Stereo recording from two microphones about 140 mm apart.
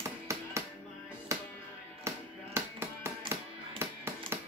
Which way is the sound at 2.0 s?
20° right (ahead or behind).